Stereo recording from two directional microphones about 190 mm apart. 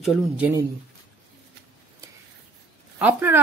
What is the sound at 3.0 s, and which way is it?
Speech, 10° right (ahead or behind).